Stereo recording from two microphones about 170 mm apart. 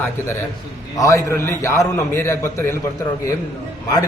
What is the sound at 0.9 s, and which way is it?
A man's voice, 20° left (ahead or behind).